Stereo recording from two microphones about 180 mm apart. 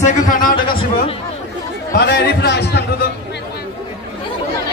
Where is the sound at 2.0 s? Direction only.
70° left (ahead or behind).